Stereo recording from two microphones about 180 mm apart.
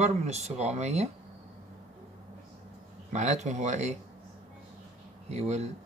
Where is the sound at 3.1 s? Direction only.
40° right (ahead or behind).